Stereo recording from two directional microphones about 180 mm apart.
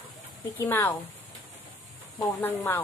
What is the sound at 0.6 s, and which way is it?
Speech, 10° left (ahead or behind).